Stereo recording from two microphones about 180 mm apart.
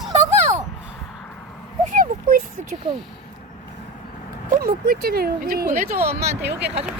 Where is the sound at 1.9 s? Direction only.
50° right (ahead or behind).